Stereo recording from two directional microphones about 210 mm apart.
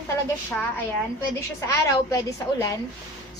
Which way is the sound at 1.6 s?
15° left (ahead or behind).